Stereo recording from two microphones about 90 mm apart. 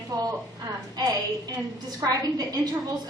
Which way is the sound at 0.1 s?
40° right (ahead or behind).